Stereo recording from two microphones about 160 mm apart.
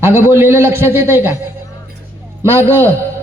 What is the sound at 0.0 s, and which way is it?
A man's voice, 15° right (ahead or behind).